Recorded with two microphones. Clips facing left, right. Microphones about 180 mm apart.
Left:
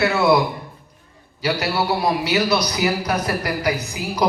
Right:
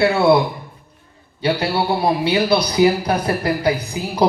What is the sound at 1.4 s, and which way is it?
A man's voice, 30° right (ahead or behind).